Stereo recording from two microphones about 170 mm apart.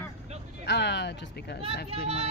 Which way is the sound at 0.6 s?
90° left.